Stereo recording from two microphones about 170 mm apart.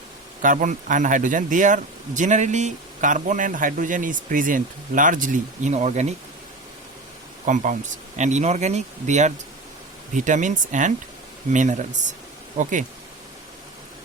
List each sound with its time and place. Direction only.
0.4 s speech: 50° right (ahead or behind)
7.4 s speech: 50° right (ahead or behind)